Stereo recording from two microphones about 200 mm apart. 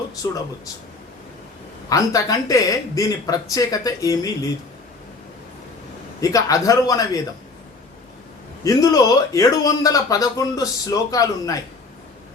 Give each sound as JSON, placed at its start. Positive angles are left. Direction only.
{"t": 0.2, "sound": "speech", "side_deg": 20}
{"t": 1.9, "sound": "speech", "side_deg": 15}
{"t": 6.1, "sound": "speech", "side_deg": 15}
{"t": 8.6, "sound": "speech", "side_deg": 20}